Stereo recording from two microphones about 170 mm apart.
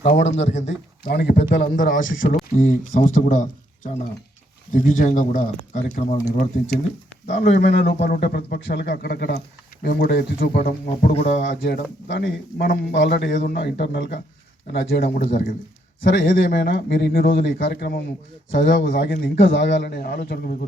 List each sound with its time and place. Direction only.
0.2 s speech: 90° left
0.6 s speech: 75° left (ahead or behind)
1.6 s speech: 50° left (ahead or behind)
4.7 s speech: 50° left (ahead or behind)
7.5 s speech: 80° left; by 11.1 s 60° left (ahead or behind)
11.3 s a man's voice: 80° left
14.7 s speech: 65° left (ahead or behind)
16.1 s speech: 85° left; by 18.0 s 70° left (ahead or behind)
18.5 s speech: 55° left (ahead or behind); by 20.4 s 75° left (ahead or behind)